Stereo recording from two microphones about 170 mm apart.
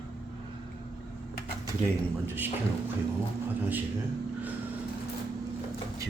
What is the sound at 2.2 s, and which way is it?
Speech, 10° right (ahead or behind).